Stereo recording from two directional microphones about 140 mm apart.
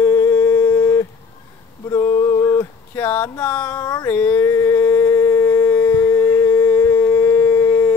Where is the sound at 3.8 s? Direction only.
25° left (ahead or behind).